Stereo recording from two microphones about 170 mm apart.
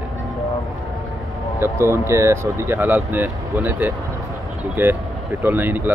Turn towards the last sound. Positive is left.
turn(degrees=-10)  # may be behind; listen again after turning